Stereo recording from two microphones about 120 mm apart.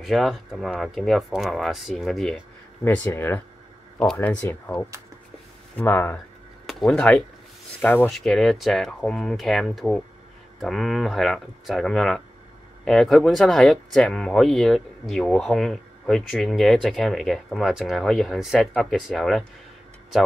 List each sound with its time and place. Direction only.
0.0 s speech: centre (ahead or behind)
2.8 s speech: 15° left (ahead or behind)
4.0 s speech: 5° left (ahead or behind)
4.3 s speech: 15° left (ahead or behind)
6.6 s speech: centre (ahead or behind)
8.1 s speech: centre (ahead or behind)